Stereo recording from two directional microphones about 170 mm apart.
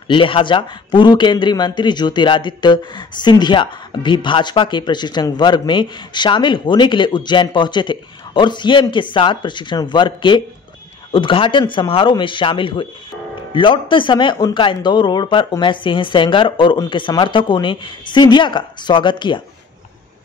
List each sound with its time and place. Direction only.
0.1 s a man's voice: 30° left (ahead or behind)